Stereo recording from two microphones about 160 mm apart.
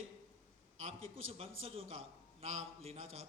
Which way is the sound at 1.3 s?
35° right (ahead or behind).